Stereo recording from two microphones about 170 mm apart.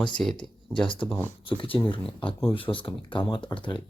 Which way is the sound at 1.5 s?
30° left (ahead or behind).